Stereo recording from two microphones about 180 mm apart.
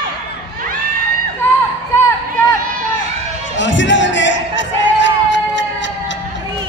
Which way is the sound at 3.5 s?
90° left.